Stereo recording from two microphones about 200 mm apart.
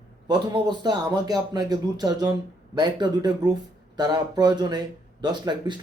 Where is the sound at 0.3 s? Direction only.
20° right (ahead or behind).